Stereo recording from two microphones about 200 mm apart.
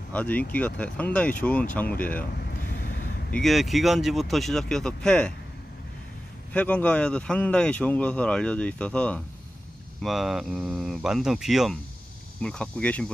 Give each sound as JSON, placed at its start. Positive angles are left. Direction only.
{"t": 0.1, "sound": "speech", "side_deg": 5}
{"t": 2.3, "sound": "vehicle", "side_deg": 50}
{"t": 3.3, "sound": "speech", "side_deg": 0}
{"t": 6.5, "sound": "speech", "side_deg": 5}